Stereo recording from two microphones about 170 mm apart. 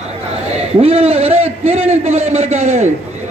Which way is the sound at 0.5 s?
35° right (ahead or behind).